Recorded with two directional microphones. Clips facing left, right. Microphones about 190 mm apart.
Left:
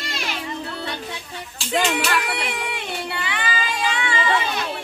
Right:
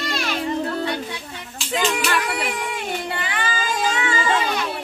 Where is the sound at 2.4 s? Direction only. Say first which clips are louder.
Right 2 dB; 45° right (ahead or behind).